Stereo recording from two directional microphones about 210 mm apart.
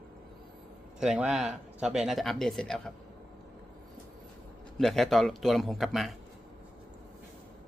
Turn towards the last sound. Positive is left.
turn(degrees=0)  # may be behind; listen again after turning